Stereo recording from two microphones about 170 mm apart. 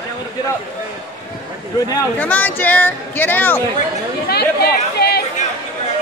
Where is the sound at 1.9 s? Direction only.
10° left (ahead or behind).